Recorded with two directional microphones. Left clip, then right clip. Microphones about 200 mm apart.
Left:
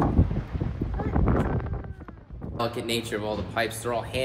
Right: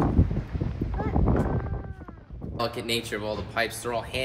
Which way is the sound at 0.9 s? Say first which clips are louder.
Even; 25° right (ahead or behind).